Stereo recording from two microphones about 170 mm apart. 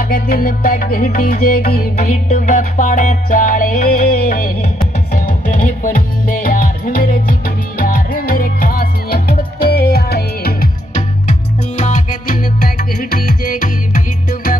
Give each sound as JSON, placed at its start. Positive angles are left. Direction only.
{"t": 0.0, "sound": "music", "side_deg": 55}
{"t": 11.0, "sound": "music", "side_deg": 45}